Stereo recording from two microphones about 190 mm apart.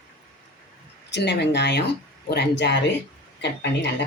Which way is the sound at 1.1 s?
60° left (ahead or behind).